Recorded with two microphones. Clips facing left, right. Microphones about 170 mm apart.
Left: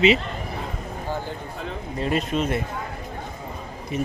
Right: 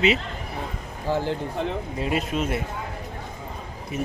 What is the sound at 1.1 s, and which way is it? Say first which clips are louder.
Speech: right 6 dB; 90° right.